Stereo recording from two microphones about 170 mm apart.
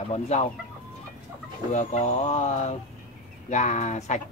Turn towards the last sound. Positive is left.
turn(degrees=40)  # may be behind; listen again after turning